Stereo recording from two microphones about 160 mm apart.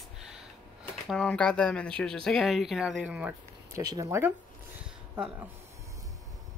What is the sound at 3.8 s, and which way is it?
Speech, 20° right (ahead or behind).